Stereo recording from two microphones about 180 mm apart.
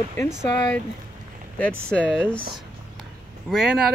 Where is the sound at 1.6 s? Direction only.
5° left (ahead or behind).